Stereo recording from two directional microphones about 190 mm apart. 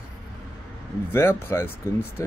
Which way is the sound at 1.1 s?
10° left (ahead or behind).